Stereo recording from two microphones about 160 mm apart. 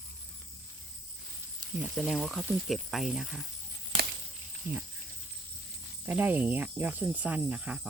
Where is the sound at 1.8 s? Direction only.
Centre (ahead or behind).